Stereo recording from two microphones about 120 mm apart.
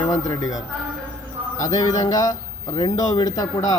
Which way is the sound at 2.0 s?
30° left (ahead or behind).